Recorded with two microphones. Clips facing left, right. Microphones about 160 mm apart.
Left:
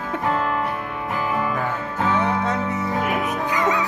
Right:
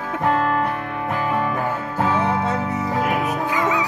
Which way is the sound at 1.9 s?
35° right (ahead or behind).